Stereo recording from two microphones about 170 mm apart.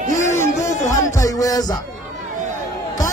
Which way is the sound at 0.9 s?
15° left (ahead or behind).